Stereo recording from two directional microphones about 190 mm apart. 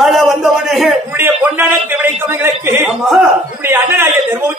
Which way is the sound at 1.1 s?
10° right (ahead or behind).